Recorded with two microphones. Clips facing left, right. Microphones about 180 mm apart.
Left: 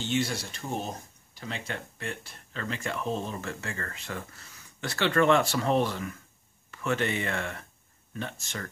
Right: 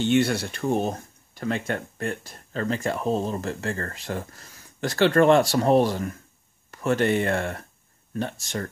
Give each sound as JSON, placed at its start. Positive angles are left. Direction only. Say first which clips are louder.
{"t": 0.0, "sound": "speech", "louder": "right 8 dB", "side_deg": -60}